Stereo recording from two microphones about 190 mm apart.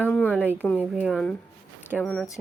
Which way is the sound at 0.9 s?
5° right (ahead or behind).